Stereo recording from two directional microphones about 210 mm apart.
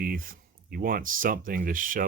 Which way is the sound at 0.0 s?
40° right (ahead or behind).